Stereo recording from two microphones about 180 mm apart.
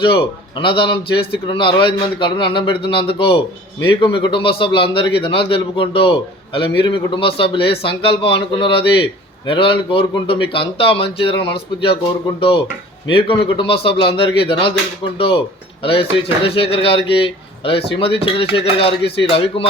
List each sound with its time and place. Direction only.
0.1 s a man's voice: 30° left (ahead or behind)
15.8 s a man's voice: 30° left (ahead or behind)